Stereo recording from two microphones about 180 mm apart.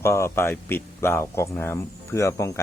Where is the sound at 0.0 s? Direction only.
15° left (ahead or behind).